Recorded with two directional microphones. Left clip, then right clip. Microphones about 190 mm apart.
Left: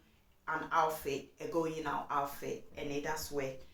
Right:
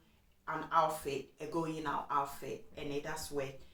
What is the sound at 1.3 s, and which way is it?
Speech, 20° left (ahead or behind).